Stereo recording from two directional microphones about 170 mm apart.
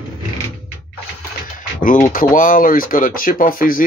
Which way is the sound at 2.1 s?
55° left (ahead or behind).